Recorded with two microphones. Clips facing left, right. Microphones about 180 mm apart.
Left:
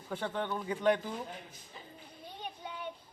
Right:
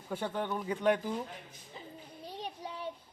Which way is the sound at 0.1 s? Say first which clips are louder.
Right 1 dB; 5° right (ahead or behind).